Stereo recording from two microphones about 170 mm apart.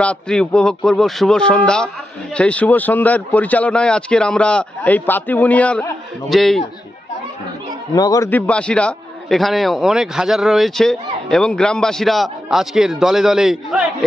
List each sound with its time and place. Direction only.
0.0 s a man's voice: 5° left (ahead or behind)
7.9 s a man's voice: 20° left (ahead or behind)
8.3 s a man's voice: 10° left (ahead or behind)